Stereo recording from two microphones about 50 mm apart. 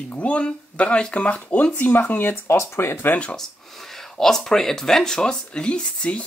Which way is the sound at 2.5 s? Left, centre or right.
Left.